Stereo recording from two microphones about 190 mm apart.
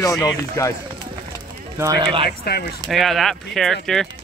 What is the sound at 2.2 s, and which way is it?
Speech, 55° left (ahead or behind).